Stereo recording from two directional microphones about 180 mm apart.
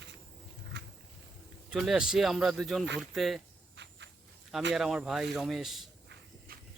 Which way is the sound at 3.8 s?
75° right (ahead or behind).